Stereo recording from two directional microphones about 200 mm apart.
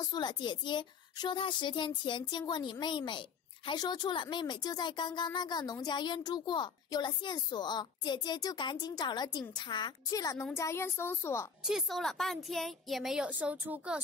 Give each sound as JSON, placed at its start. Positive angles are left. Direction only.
{"t": 0.1, "sound": "speech", "side_deg": 20}
{"t": 11.6, "sound": "a woman's voice", "side_deg": 0}